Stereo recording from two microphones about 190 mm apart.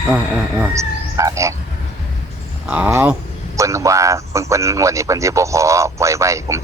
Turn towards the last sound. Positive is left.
turn(degrees=-15)  # may be behind; listen again after turning